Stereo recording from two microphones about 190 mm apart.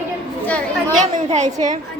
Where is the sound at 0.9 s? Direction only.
40° right (ahead or behind).